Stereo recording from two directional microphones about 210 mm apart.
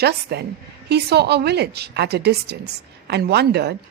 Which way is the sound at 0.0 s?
50° right (ahead or behind).